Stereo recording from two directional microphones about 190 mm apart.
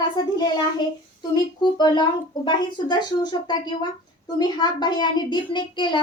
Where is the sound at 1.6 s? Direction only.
25° left (ahead or behind).